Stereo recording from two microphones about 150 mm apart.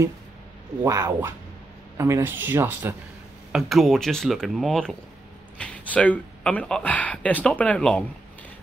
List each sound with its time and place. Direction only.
0.8 s speech: 20° right (ahead or behind)
3.5 s speech: centre (ahead or behind)